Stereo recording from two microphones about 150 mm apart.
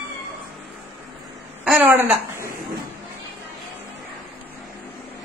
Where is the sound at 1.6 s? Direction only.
10° right (ahead or behind).